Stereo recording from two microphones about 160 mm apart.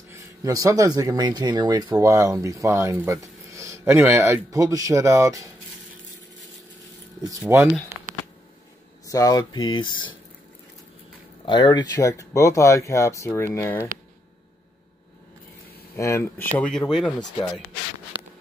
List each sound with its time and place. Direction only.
0.1 s speech: 20° right (ahead or behind)
7.2 s speech: 20° right (ahead or behind)
7.9 s a sound: 15° right (ahead or behind)
9.1 s speech: 20° left (ahead or behind)
11.4 s speech: 25° left (ahead or behind)
16.0 s speech: 15° left (ahead or behind)
16.5 s speech: 5° left (ahead or behind)